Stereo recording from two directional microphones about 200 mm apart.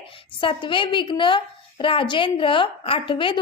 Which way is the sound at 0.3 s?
25° left (ahead or behind).